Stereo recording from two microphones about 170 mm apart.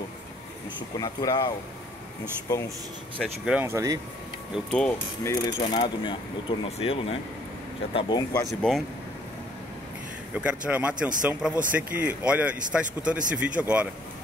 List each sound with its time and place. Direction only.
0.9 s speech: 25° left (ahead or behind)
3.4 s speech: 10° right (ahead or behind)
4.6 s speech: 5° left (ahead or behind)
5.2 s speech: 20° left (ahead or behind); by 7.2 s 35° left (ahead or behind)
7.9 s speech: 25° left (ahead or behind)
8.5 s speech: centre (ahead or behind)
10.3 s speech: 10° right (ahead or behind)